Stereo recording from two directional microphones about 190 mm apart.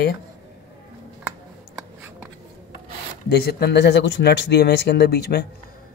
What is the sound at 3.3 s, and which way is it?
Speech, 55° left (ahead or behind).